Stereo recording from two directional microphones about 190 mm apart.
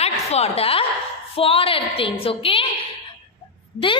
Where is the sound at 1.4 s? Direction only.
30° left (ahead or behind).